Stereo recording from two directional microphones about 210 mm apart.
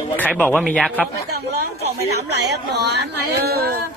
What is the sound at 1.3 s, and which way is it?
Speech, 50° right (ahead or behind).